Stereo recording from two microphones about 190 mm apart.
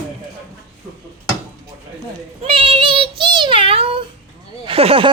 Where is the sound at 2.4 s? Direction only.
30° right (ahead or behind).